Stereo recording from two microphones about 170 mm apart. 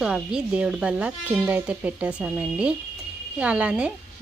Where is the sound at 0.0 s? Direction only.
5° right (ahead or behind).